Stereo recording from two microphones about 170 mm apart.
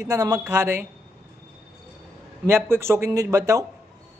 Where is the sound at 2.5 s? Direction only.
15° right (ahead or behind).